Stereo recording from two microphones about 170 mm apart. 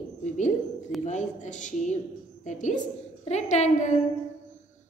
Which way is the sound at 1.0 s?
45° left (ahead or behind).